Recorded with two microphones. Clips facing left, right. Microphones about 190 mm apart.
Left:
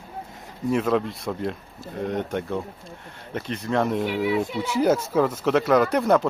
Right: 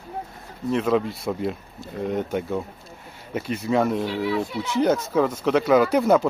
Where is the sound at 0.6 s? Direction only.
Centre (ahead or behind).